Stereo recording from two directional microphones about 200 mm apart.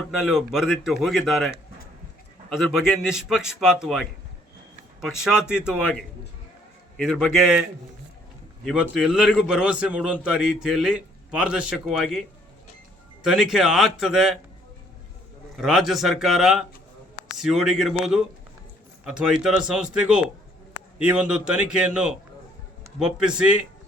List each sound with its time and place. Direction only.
0.3 s a man's voice: centre (ahead or behind)
8.6 s a man's voice: 5° right (ahead or behind)
13.2 s a man's voice: centre (ahead or behind)
15.5 s a man's voice: centre (ahead or behind)